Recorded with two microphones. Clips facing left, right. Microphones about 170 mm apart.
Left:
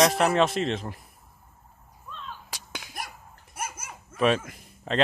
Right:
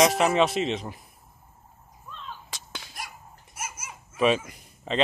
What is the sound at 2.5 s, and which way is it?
Whip, 10° left (ahead or behind).